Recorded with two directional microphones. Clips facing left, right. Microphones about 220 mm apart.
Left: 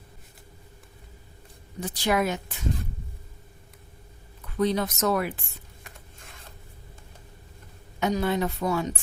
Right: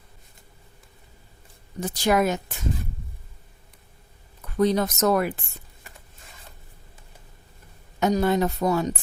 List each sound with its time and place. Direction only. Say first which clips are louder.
1.8 s speech: right 4 dB; 40° right (ahead or behind)
4.5 s speech: right 4 dB; 45° right (ahead or behind)
7.9 s a woman's voice: right 4 dB; 40° right (ahead or behind)